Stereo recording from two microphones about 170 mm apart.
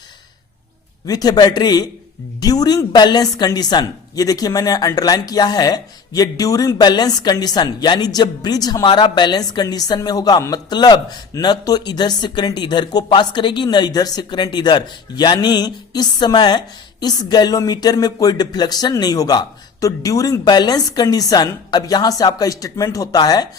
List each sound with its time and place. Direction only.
1.0 s a woman's voice: 20° left (ahead or behind)